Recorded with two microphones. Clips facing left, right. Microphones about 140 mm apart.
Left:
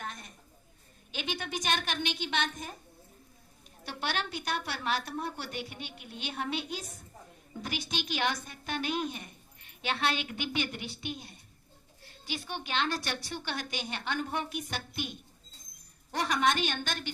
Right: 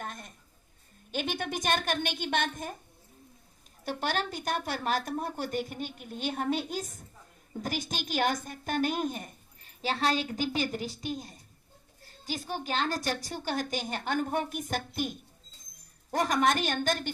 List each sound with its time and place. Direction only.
0.0 s a sound: 50° right (ahead or behind)
1.1 s a woman's voice: 50° right (ahead or behind)
3.8 s a woman's voice: 45° right (ahead or behind)